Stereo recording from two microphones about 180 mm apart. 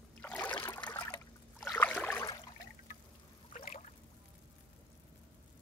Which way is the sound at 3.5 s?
45° left (ahead or behind).